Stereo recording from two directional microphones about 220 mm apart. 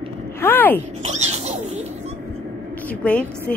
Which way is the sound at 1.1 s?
30° right (ahead or behind).